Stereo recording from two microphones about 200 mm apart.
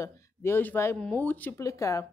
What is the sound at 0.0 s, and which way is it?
Speech, 15° left (ahead or behind).